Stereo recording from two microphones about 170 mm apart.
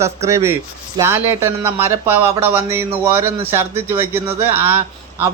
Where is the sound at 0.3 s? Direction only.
15° right (ahead or behind).